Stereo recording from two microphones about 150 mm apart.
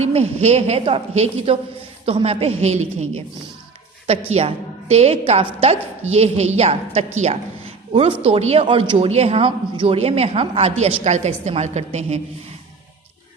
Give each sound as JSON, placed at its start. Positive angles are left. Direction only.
{"t": 0.0, "sound": "speech", "side_deg": -45}
{"t": 4.3, "sound": "speech", "side_deg": -45}
{"t": 8.6, "sound": "speech", "side_deg": -35}